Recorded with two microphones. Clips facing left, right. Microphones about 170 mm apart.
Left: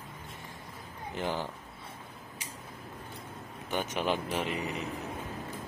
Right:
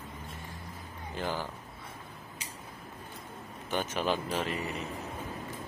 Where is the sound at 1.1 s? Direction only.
20° left (ahead or behind).